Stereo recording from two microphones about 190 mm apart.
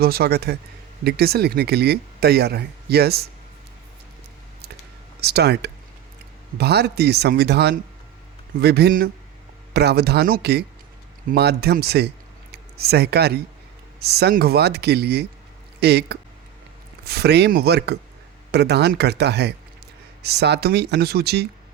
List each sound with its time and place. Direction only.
0.0 s speech: 55° right (ahead or behind)
5.2 s speech: 60° right (ahead or behind)